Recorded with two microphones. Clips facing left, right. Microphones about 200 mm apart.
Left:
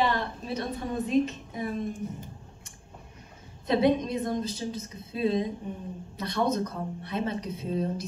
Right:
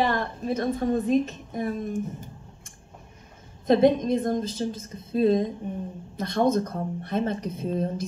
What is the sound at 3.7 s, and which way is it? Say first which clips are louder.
Speech: right 5 dB; 50° right (ahead or behind).